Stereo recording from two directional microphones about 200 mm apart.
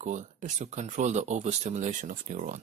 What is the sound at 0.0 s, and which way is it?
Speech, 40° right (ahead or behind).